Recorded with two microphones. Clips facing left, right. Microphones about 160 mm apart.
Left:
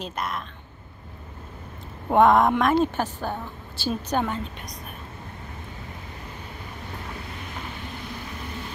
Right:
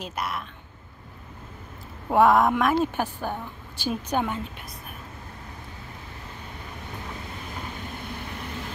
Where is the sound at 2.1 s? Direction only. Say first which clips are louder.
Left 1 dB; 5° right (ahead or behind).